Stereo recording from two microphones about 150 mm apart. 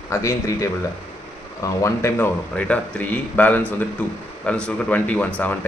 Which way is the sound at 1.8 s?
15° left (ahead or behind).